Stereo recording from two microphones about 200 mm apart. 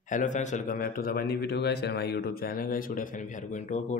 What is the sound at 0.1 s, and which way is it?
A man's voice, 40° left (ahead or behind).